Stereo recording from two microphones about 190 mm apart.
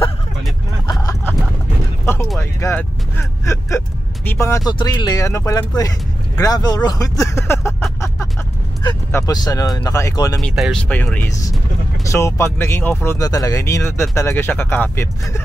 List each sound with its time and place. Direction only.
2.6 s speech: 15° left (ahead or behind)
9.1 s speech: 20° left (ahead or behind)
10.4 s speech: centre (ahead or behind)